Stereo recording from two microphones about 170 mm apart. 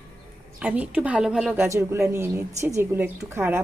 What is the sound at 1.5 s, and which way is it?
A woman's voice, 15° right (ahead or behind).